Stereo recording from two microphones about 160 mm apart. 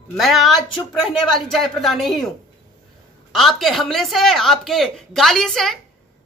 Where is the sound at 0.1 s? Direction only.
Centre (ahead or behind).